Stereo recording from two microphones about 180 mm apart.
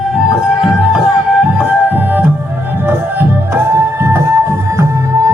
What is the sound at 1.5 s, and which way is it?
Music, 10° right (ahead or behind).